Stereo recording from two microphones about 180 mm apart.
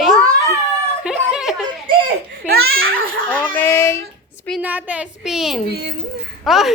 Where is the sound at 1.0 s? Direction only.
5° right (ahead or behind).